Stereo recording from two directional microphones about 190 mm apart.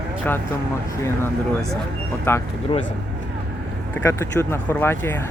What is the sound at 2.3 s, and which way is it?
Speech, 10° left (ahead or behind).